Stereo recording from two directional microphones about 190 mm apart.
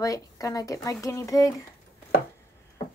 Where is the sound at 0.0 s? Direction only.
20° left (ahead or behind).